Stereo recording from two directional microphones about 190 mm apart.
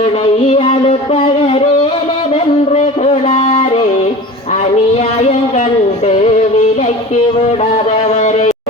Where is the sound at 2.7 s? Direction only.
35° left (ahead or behind).